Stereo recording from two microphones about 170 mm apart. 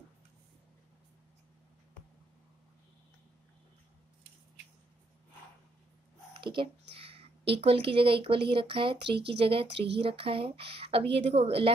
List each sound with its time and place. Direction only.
6.4 s a sound: 30° right (ahead or behind)
7.6 s speech: 35° right (ahead or behind)
9.2 s speech: 85° right
10.0 s speech: 30° right (ahead or behind)